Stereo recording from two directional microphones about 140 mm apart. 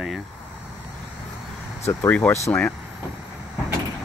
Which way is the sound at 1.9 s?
10° left (ahead or behind).